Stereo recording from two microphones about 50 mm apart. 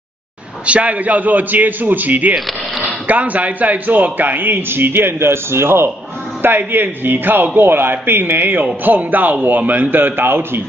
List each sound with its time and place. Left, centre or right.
0.7 s speech: right
6.4 s speech: right